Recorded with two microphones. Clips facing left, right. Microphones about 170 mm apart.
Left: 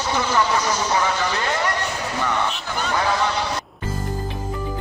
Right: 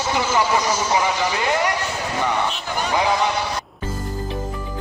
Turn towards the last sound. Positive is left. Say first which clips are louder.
# right 2 dB
turn(degrees=-15)  # may be behind; listen again after turning